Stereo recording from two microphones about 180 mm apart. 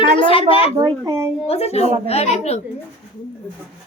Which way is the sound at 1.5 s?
35° left (ahead or behind).